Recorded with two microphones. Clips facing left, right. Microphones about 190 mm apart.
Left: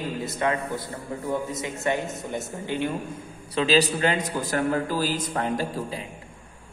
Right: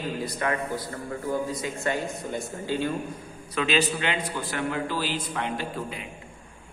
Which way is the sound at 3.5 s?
35° left (ahead or behind).